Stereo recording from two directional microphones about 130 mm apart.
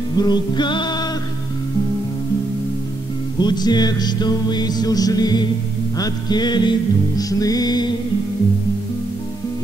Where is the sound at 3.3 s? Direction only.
35° left (ahead or behind).